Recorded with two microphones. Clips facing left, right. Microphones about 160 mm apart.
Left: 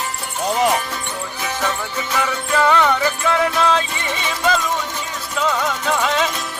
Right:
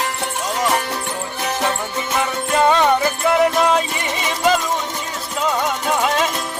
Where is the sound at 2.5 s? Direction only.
20° right (ahead or behind).